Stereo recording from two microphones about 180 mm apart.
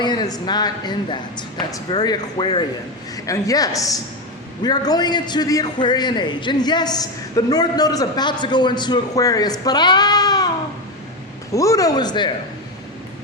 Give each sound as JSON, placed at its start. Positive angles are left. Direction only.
{"t": 0.0, "sound": "a man's voice", "side_deg": 25}
{"t": 11.5, "sound": "a man's voice", "side_deg": 15}